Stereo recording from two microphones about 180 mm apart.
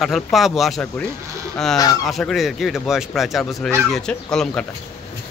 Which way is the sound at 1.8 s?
20° left (ahead or behind).